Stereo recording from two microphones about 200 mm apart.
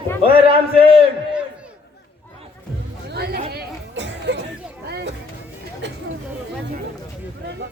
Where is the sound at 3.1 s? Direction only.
55° right (ahead or behind).